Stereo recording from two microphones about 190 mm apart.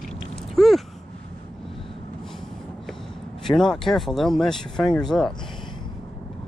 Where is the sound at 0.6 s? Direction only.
Centre (ahead or behind).